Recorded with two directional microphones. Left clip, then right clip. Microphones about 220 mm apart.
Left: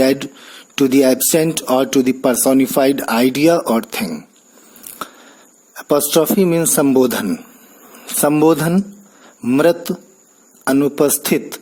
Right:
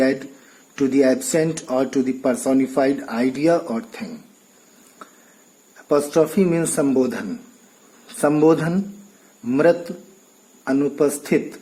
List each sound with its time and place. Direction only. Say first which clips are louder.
0.0 s speech: left 5 dB; 40° left (ahead or behind)
5.7 s speech: left 3 dB; 40° left (ahead or behind)